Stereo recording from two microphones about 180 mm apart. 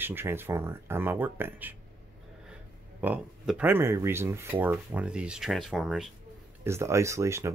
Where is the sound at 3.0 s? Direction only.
5° right (ahead or behind).